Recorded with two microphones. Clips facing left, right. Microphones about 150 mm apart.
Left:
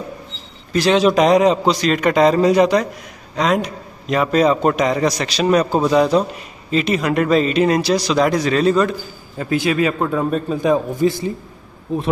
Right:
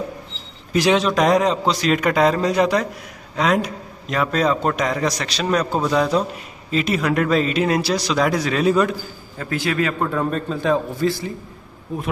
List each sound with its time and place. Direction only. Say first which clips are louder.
0.9 s a man's voice: left 6 dB; centre (ahead or behind)
9.4 s a man's voice: left 4 dB; 15° left (ahead or behind)